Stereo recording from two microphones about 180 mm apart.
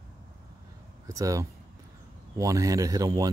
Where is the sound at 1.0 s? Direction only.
20° right (ahead or behind).